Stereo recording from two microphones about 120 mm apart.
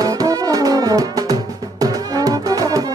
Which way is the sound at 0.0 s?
30° right (ahead or behind).